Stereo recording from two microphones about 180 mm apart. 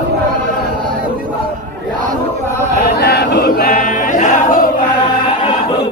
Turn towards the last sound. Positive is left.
turn(degrees=45)  # may be behind; listen again after turning